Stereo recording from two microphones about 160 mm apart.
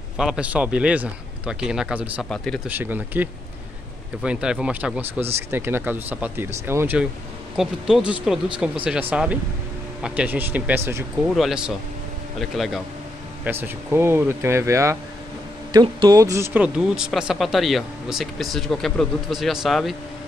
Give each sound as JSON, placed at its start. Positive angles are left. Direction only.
{"t": 0.2, "sound": "a man's voice", "side_deg": -5}
{"t": 2.2, "sound": "speech", "side_deg": 5}
{"t": 2.7, "sound": "a man's voice", "side_deg": -10}
{"t": 7.5, "sound": "a man's voice", "side_deg": 0}
{"t": 11.2, "sound": "speech", "side_deg": 0}
{"t": 13.4, "sound": "a man's voice", "side_deg": -15}